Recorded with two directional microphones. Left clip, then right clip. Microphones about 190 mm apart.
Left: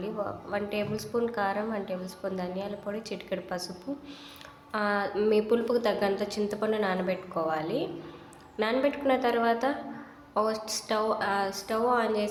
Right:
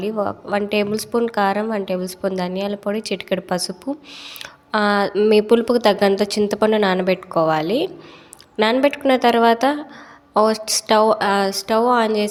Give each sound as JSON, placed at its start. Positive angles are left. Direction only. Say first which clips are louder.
{"t": 0.0, "sound": "a woman's voice", "louder": "right 11 dB", "side_deg": -45}
{"t": 4.7, "sound": "a woman's voice", "louder": "right 11 dB", "side_deg": -50}